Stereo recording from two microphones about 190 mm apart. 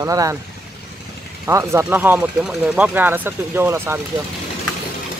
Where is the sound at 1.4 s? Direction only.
15° right (ahead or behind).